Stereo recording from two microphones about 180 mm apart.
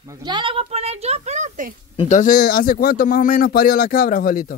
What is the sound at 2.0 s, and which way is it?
Speech, 40° left (ahead or behind).